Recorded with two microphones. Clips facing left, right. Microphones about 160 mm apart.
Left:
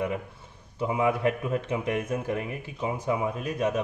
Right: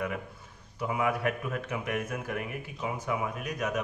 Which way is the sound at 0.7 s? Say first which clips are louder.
Left 4 dB; 25° left (ahead or behind).